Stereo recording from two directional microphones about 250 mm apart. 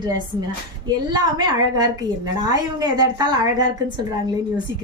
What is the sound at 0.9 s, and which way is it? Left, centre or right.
A woman's voice, centre.